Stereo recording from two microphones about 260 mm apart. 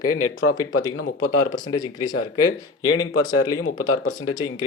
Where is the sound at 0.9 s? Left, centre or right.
Left.